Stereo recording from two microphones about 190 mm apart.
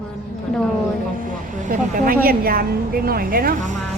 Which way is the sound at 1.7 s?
50° right (ahead or behind).